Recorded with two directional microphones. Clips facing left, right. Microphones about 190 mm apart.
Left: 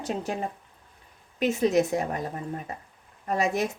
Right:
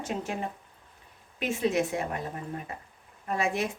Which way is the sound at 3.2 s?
40° left (ahead or behind).